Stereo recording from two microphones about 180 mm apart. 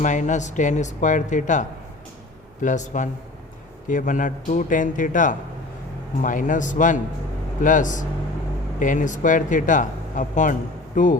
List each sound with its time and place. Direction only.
0.0 s speech: 45° left (ahead or behind)